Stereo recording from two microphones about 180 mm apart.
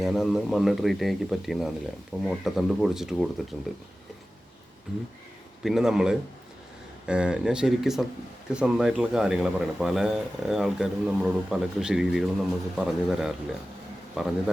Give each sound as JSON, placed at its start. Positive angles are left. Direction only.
{"t": 0.0, "sound": "speech", "side_deg": 0}
{"t": 5.6, "sound": "speech", "side_deg": 0}